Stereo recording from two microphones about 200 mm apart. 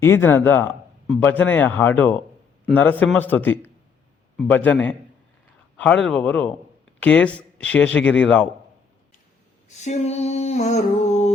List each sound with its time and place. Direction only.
0.0 s speech: 10° left (ahead or behind)
9.6 s female singing: 35° left (ahead or behind)